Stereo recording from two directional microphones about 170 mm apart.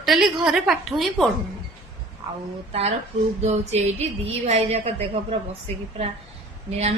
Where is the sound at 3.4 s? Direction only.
40° right (ahead or behind).